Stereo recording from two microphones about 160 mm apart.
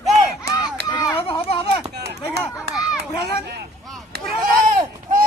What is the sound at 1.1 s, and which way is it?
Children playing, 35° left (ahead or behind).